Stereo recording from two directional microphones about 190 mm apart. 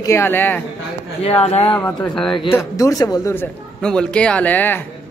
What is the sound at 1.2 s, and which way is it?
Speech, 35° left (ahead or behind).